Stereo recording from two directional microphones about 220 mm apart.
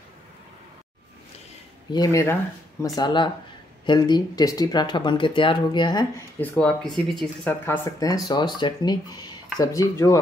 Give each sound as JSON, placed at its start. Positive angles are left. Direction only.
{"t": 1.9, "sound": "speech", "side_deg": 15}
{"t": 6.4, "sound": "speech", "side_deg": 5}